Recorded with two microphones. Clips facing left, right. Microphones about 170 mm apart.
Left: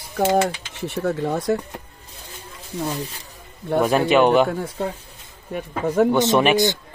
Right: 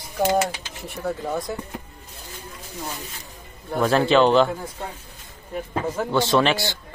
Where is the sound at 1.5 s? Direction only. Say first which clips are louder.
Left 9 dB; 70° left (ahead or behind).